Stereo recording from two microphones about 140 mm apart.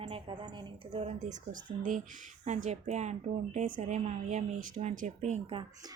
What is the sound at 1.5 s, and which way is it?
Speech, 70° right (ahead or behind).